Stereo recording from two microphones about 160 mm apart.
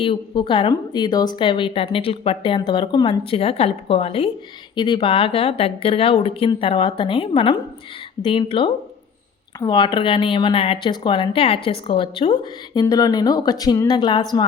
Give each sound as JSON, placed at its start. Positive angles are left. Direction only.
{"t": 0.0, "sound": "speech", "side_deg": 30}